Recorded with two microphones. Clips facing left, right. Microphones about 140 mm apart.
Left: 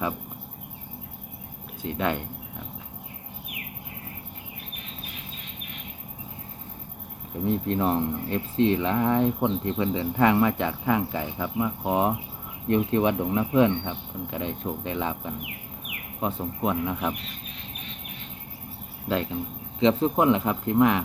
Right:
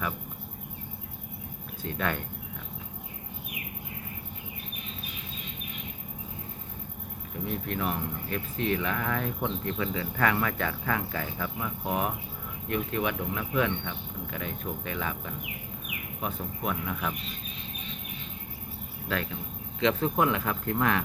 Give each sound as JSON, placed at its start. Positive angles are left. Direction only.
{"t": 1.8, "sound": "speech", "side_deg": 20}
{"t": 7.4, "sound": "speech", "side_deg": 30}
{"t": 19.8, "sound": "speech", "side_deg": 25}